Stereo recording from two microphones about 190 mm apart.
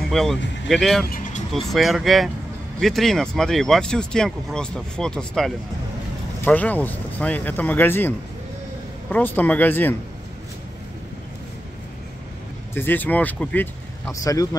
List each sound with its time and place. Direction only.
0.1 s speech: centre (ahead or behind)
9.1 s speech: 10° left (ahead or behind)
12.7 s speech: 10° left (ahead or behind)
14.2 s speech: 20° left (ahead or behind)